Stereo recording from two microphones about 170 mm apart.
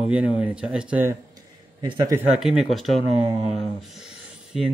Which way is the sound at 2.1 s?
5° right (ahead or behind).